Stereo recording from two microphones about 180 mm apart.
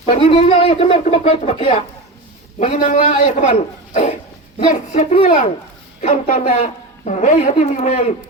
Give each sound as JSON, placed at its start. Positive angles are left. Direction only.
{"t": 0.0, "sound": "a woman's voice", "side_deg": 35}